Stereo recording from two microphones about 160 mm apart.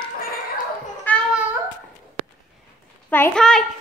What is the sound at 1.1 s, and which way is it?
Babbling, 10° left (ahead or behind).